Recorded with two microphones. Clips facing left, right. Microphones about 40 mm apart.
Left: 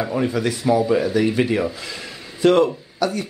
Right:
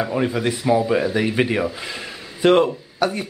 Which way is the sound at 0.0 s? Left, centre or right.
Centre.